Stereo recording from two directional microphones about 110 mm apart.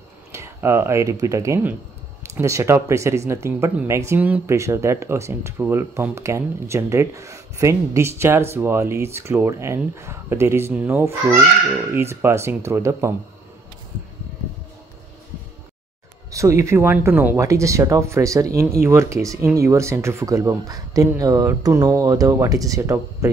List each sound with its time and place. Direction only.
0.3 s a sound: 25° right (ahead or behind)
1.2 s speech: 30° right (ahead or behind)
4.2 s speech: 15° right (ahead or behind)
4.6 s speech: 25° right (ahead or behind)
16.3 s speech: 30° right (ahead or behind)
17.4 s speech: 30° right (ahead or behind)